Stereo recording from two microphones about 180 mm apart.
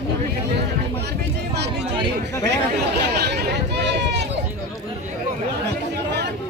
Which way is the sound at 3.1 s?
60° right (ahead or behind).